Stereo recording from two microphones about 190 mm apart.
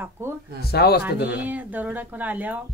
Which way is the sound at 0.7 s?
55° left (ahead or behind).